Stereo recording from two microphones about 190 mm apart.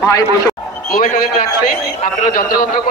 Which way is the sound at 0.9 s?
45° left (ahead or behind).